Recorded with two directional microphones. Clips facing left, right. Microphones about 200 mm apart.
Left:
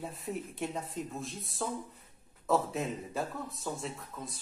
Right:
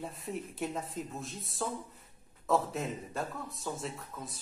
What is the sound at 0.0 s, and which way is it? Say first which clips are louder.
Speech: left 1 dB; centre (ahead or behind).